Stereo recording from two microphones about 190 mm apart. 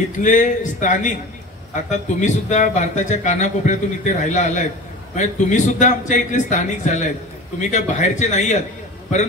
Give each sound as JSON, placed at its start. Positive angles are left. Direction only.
{"t": 0.2, "sound": "speech", "side_deg": 40}